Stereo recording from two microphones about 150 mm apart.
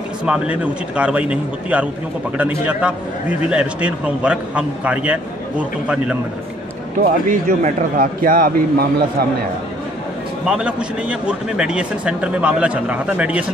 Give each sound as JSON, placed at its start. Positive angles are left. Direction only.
{"t": 0.2, "sound": "a man's voice", "side_deg": -5}
{"t": 7.0, "sound": "speech", "side_deg": -60}
{"t": 10.4, "sound": "a man's voice", "side_deg": -5}